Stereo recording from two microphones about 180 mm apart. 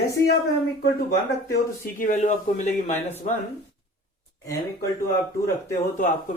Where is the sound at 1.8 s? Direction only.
50° left (ahead or behind).